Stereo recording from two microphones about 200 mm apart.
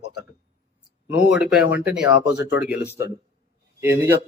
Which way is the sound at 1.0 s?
5° right (ahead or behind).